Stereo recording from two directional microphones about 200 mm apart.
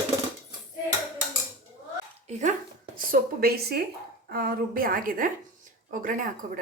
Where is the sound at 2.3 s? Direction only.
35° right (ahead or behind).